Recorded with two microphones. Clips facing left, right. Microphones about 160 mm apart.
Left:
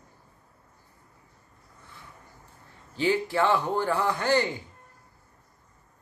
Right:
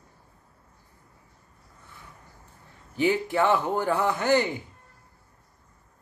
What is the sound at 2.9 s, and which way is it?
Speech, 15° right (ahead or behind).